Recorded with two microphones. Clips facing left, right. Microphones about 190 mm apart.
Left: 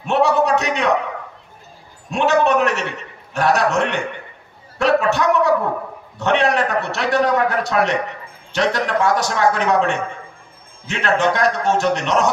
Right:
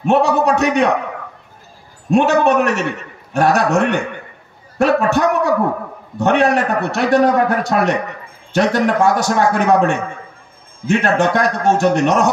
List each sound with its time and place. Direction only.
0.0 s a man's voice: 50° right (ahead or behind)
2.0 s a man's voice: 50° right (ahead or behind)